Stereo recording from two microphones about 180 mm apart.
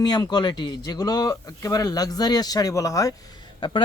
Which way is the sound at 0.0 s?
20° left (ahead or behind).